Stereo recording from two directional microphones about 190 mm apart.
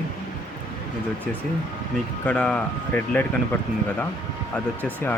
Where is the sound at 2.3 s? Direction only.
5° left (ahead or behind).